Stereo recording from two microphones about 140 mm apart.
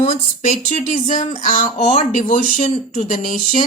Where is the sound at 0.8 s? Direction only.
65° left (ahead or behind).